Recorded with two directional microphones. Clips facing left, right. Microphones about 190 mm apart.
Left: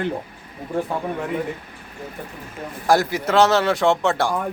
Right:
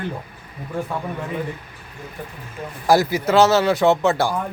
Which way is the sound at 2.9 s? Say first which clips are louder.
Right 2 dB; centre (ahead or behind).